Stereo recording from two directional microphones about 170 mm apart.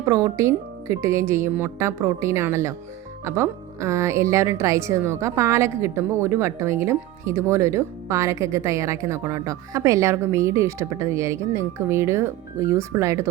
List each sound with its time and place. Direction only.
0.0 s a woman's voice: 20° right (ahead or behind)